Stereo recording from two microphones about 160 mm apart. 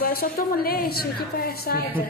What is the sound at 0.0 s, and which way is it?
A woman's voice, 70° left (ahead or behind).